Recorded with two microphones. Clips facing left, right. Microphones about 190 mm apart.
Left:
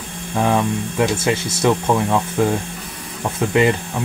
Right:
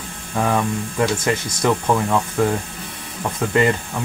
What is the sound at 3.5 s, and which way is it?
Speech, 10° left (ahead or behind).